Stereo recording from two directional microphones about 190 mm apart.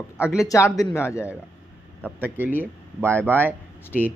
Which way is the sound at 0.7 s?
15° left (ahead or behind).